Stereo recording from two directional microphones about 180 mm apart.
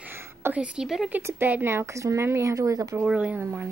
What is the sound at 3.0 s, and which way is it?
Speech, 5° right (ahead or behind).